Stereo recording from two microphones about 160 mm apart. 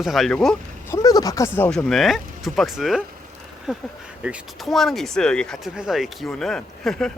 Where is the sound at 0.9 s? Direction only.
20° left (ahead or behind).